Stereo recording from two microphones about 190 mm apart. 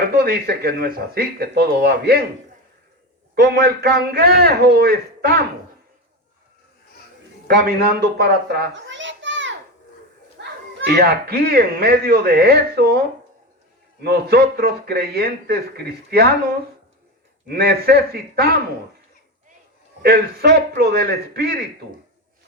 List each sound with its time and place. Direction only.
0.1 s speech: 50° right (ahead or behind)
3.3 s speech: 55° right (ahead or behind)
7.4 s a man's voice: 55° right (ahead or behind)
8.2 s children playing: 55° right (ahead or behind); by 9.6 s 75° right (ahead or behind)
10.8 s a man's voice: 55° right (ahead or behind)
14.0 s a man's voice: 55° right (ahead or behind)
17.5 s speech: 55° right (ahead or behind)
20.0 s speech: 55° right (ahead or behind)